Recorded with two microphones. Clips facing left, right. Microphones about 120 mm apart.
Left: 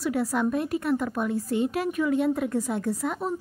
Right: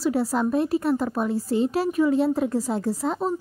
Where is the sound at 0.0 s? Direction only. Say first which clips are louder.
Right 3 dB; 30° right (ahead or behind).